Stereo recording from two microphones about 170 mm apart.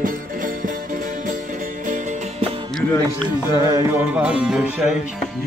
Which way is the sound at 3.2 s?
20° right (ahead or behind).